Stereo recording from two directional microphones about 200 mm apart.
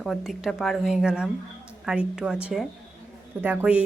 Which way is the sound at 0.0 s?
Centre (ahead or behind).